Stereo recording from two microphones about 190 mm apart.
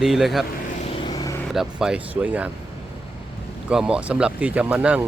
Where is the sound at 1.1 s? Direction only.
20° left (ahead or behind).